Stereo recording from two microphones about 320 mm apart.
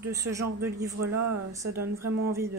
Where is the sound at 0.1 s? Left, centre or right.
Centre.